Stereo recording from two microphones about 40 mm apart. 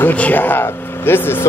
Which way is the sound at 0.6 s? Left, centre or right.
Left.